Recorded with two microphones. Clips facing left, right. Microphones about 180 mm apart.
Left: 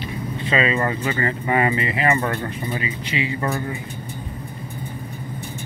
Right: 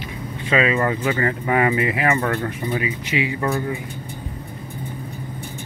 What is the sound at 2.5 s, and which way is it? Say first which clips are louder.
Speech: right 3 dB; 10° right (ahead or behind).